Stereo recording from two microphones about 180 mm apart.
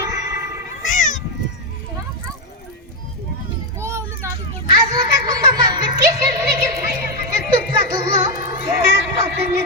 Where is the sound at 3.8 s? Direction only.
15° right (ahead or behind).